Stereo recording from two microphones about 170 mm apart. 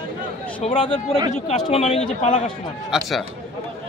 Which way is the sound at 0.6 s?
45° left (ahead or behind).